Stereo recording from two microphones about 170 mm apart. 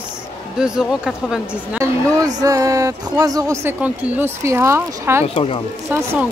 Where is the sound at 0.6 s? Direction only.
5° right (ahead or behind).